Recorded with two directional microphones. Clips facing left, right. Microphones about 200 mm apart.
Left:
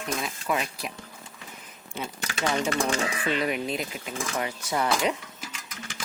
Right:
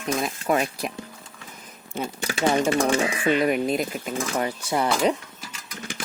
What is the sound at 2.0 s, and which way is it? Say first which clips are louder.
Speech: right 5 dB; 45° right (ahead or behind).